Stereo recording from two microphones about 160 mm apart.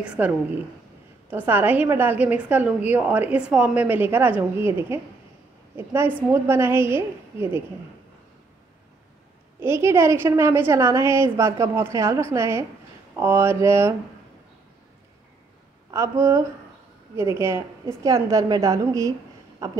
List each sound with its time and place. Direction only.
0.0 s a woman's voice: 5° right (ahead or behind)
1.3 s a woman's voice: 10° right (ahead or behind)
9.6 s a woman's voice: 15° right (ahead or behind)
15.9 s a woman's voice: 20° right (ahead or behind)